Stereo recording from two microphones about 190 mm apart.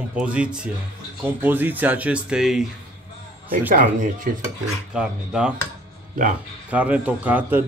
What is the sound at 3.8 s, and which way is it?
Speech, 45° right (ahead or behind).